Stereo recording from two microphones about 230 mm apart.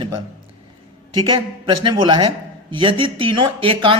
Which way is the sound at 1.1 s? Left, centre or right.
Centre.